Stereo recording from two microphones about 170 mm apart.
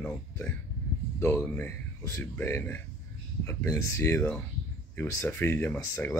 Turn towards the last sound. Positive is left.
turn(degrees=10)  # may be behind; listen again after turning